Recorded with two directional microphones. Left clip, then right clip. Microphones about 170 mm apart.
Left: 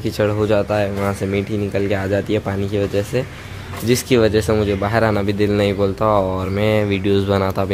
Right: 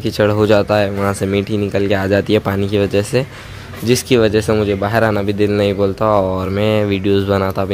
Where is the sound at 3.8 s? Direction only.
15° right (ahead or behind).